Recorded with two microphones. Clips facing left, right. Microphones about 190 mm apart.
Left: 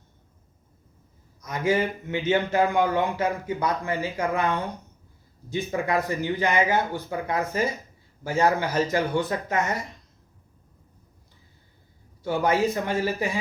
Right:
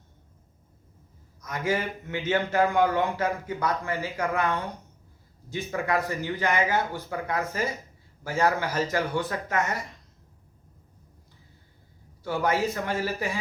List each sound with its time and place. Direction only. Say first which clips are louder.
1.4 s a man's voice: left 4 dB; 20° left (ahead or behind)
12.2 s a man's voice: left 3 dB; 20° left (ahead or behind)